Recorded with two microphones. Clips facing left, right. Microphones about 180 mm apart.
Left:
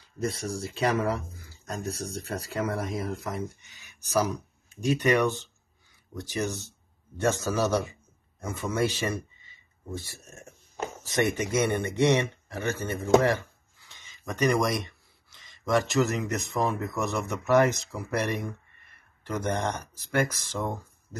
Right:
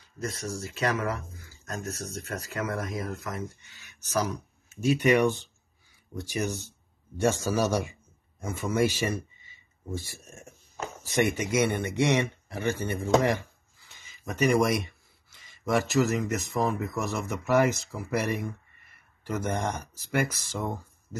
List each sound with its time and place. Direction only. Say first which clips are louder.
0.2 s speech: left 3 dB; 30° left (ahead or behind)
3.6 s speech: even; 15° left (ahead or behind)
4.6 s speech: right 1 dB; 5° right (ahead or behind)
11.1 s speech: right 1 dB; 10° right (ahead or behind)